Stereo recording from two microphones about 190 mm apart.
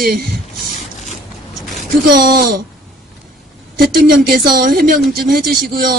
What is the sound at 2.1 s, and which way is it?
Speech, 55° right (ahead or behind).